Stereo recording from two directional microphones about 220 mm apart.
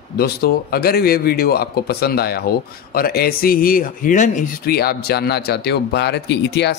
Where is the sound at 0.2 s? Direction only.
45° left (ahead or behind).